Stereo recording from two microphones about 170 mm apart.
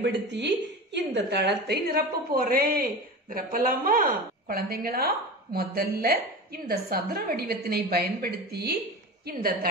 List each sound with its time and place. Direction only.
0.0 s a woman's voice: 85° right; by 9.7 s 60° right (ahead or behind)